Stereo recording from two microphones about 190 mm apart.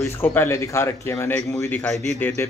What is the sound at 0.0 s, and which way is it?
Speech, 10° left (ahead or behind).